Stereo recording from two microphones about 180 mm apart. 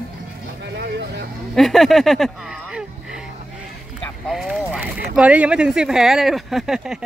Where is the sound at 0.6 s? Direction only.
70° right (ahead or behind).